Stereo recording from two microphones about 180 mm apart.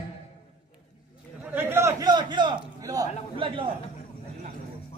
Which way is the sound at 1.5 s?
10° right (ahead or behind).